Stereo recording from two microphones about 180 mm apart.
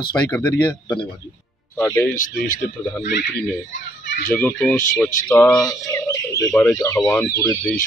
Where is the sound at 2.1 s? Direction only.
50° left (ahead or behind).